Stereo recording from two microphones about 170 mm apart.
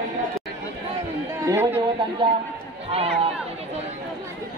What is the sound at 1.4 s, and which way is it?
Speech, 15° right (ahead or behind).